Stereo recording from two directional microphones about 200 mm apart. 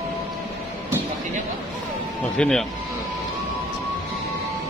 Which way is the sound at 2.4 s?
5° left (ahead or behind).